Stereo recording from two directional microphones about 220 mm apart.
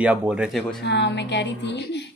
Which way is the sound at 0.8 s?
50° left (ahead or behind).